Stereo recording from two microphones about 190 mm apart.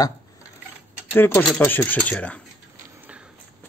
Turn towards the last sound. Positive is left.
turn(degrees=-5)  # may be behind; listen again after turning